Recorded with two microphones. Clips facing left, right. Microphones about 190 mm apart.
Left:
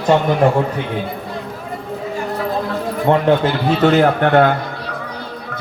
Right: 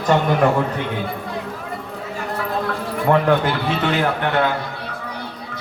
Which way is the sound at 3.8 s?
45° left (ahead or behind).